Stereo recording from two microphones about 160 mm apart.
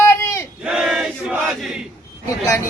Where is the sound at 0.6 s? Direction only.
5° right (ahead or behind).